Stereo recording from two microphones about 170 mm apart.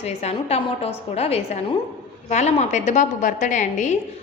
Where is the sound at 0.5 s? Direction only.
35° left (ahead or behind).